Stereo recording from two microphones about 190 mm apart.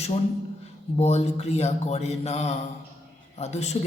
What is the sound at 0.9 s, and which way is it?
Speech, 35° left (ahead or behind).